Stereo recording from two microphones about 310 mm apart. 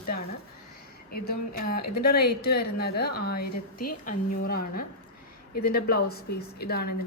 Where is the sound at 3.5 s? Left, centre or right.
Left.